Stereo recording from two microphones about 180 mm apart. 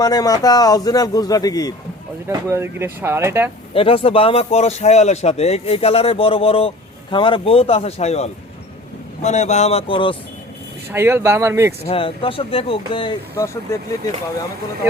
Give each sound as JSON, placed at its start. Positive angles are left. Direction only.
{"t": 0.0, "sound": "a man's voice", "side_deg": 20}
{"t": 2.2, "sound": "speech", "side_deg": -15}
{"t": 3.8, "sound": "speech", "side_deg": 30}
{"t": 10.9, "sound": "speech", "side_deg": -15}
{"t": 11.9, "sound": "a man's voice", "side_deg": 30}
{"t": 13.3, "sound": "speech", "side_deg": 15}